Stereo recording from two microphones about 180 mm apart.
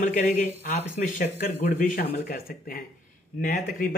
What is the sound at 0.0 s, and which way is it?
Speech, 40° left (ahead or behind).